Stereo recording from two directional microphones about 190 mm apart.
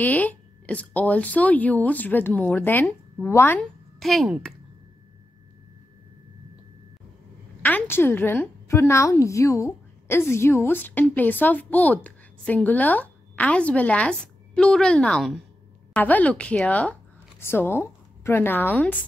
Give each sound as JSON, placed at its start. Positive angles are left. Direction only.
{"t": 0.0, "sound": "a woman's voice", "side_deg": 10}
{"t": 7.6, "sound": "a woman's voice", "side_deg": 10}